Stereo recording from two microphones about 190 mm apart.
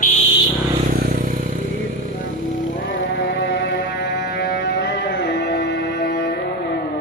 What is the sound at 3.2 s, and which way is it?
Music, 60° left (ahead or behind).